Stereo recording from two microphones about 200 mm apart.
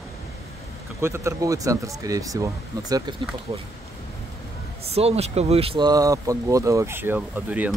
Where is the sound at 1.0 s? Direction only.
15° right (ahead or behind).